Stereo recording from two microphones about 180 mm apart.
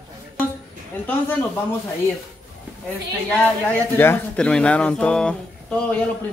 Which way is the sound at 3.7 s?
10° left (ahead or behind).